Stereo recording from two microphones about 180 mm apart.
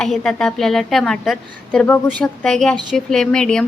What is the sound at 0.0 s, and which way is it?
A woman's voice, 5° left (ahead or behind).